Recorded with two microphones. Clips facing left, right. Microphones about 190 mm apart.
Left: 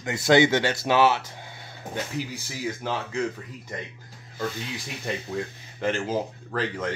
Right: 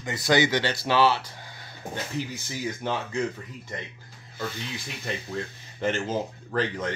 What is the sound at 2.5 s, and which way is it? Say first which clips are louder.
Speech: even; 5° left (ahead or behind).